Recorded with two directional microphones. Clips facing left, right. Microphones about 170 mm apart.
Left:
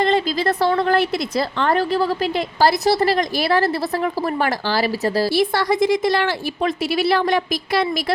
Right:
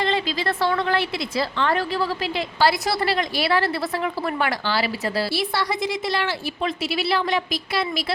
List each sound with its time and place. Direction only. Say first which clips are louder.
0.0 s a woman's voice: left 5 dB; 45° left (ahead or behind)